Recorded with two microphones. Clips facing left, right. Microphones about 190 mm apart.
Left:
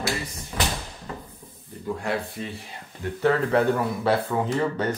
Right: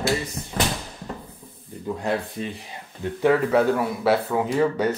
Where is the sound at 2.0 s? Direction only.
20° right (ahead or behind).